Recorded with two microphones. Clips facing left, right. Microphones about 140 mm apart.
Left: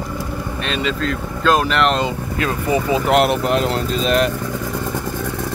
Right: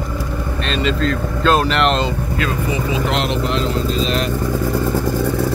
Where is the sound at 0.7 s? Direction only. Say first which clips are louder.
Right 3 dB; 5° left (ahead or behind).